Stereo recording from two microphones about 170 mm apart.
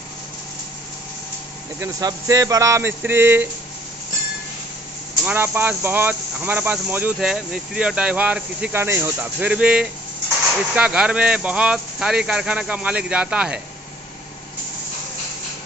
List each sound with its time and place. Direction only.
1.8 s speech: 20° right (ahead or behind)
5.2 s speech: 10° right (ahead or behind)